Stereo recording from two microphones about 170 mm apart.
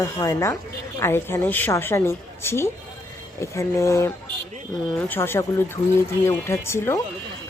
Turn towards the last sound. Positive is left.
turn(degrees=15)  # may be behind; listen again after turning